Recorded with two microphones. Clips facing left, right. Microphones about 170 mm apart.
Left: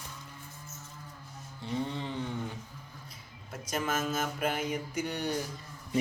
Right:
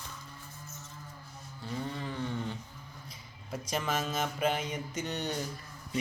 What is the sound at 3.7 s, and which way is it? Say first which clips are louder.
Mantra: left 1 dB; 5° left (ahead or behind).